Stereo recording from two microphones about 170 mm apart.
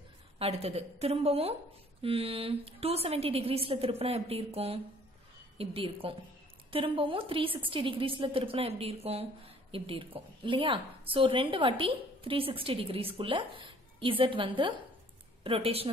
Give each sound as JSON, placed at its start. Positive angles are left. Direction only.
{"t": 0.4, "sound": "a woman's voice", "side_deg": -35}